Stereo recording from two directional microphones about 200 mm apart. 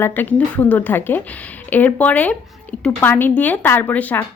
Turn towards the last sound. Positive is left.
turn(degrees=10)  # may be behind; listen again after turning